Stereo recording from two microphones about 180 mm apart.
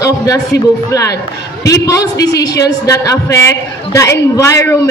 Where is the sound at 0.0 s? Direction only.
20° left (ahead or behind).